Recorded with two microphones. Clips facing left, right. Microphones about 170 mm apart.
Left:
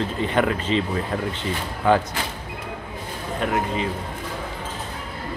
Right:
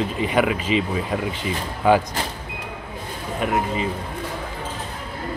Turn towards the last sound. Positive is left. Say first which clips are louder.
# right 1 dB
turn(degrees=-5)  # may be behind; listen again after turning